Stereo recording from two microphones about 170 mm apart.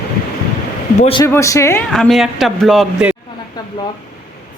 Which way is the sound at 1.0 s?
35° left (ahead or behind).